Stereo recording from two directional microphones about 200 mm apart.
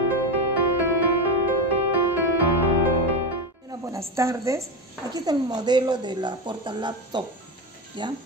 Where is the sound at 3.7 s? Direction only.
15° right (ahead or behind).